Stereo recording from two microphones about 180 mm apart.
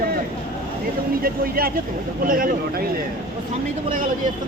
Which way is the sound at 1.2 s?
55° right (ahead or behind).